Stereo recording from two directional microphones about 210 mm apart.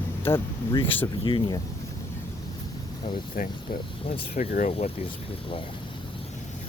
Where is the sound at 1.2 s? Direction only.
20° left (ahead or behind).